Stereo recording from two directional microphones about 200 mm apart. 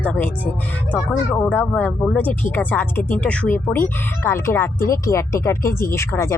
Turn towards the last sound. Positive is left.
turn(degrees=15)  # may be behind; listen again after turning